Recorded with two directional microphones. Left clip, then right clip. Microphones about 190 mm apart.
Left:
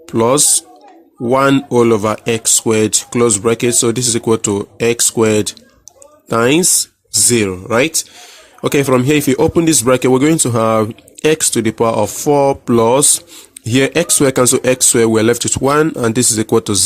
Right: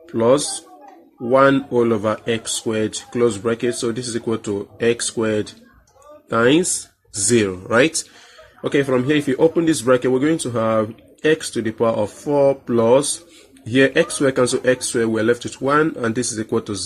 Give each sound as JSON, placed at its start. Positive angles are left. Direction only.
{"t": 0.1, "sound": "speech", "side_deg": 50}
{"t": 8.6, "sound": "speech", "side_deg": 50}